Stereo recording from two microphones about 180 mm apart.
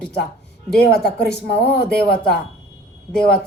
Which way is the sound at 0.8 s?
65° left (ahead or behind).